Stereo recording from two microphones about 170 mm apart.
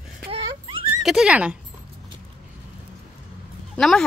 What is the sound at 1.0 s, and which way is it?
Speech, 5° right (ahead or behind).